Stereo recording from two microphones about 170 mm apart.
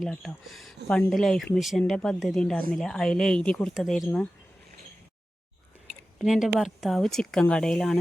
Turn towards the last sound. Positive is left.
turn(degrees=5)  # may be behind; listen again after turning